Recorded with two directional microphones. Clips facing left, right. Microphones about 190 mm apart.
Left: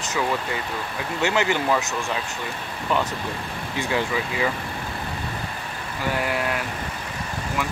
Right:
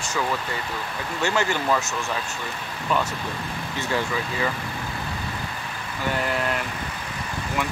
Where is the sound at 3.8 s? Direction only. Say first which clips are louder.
Left 2 dB; 15° left (ahead or behind).